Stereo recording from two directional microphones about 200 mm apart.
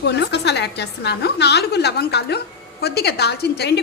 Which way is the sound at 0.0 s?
60° left (ahead or behind).